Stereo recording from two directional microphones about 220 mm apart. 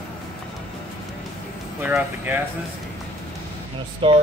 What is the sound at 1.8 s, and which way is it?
Speech, 10° right (ahead or behind).